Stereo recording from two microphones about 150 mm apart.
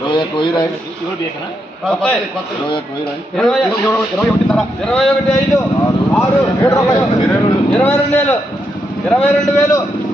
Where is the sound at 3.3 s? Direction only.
5° left (ahead or behind).